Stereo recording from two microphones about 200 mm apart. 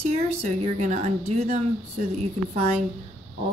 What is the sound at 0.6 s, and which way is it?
Speech, 35° right (ahead or behind).